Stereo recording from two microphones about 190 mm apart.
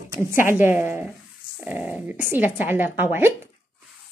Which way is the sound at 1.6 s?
5° right (ahead or behind).